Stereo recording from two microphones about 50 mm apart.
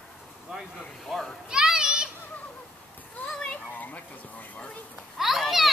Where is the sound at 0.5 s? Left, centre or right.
Centre.